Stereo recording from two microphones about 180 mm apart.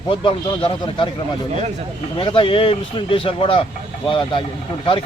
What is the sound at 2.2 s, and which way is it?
Speech, 30° left (ahead or behind).